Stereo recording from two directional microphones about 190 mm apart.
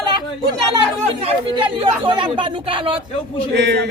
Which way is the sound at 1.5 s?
25° right (ahead or behind).